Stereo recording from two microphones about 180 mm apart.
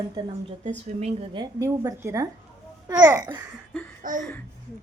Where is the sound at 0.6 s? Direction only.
40° right (ahead or behind); by 3.4 s 20° right (ahead or behind).